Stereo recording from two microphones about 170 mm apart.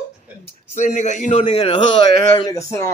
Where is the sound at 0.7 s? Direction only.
45° left (ahead or behind).